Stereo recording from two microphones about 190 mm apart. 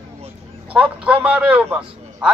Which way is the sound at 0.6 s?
5° right (ahead or behind).